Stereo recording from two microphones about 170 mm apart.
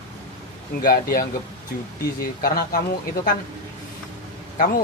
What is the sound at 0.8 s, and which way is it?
Speech, 60° left (ahead or behind).